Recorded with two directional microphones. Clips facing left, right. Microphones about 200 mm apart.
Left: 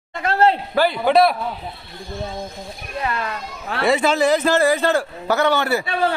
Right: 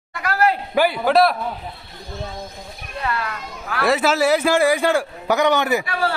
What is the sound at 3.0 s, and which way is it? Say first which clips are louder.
Speech: even; 20° left (ahead or behind).